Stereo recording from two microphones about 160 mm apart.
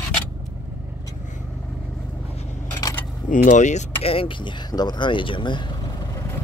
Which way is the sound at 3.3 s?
55° left (ahead or behind).